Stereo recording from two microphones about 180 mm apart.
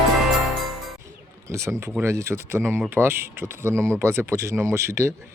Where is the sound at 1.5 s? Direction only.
15° right (ahead or behind).